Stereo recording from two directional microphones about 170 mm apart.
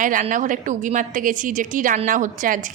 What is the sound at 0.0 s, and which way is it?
Speech, 50° right (ahead or behind).